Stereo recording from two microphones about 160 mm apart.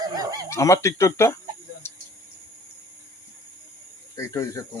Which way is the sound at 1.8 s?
15° left (ahead or behind).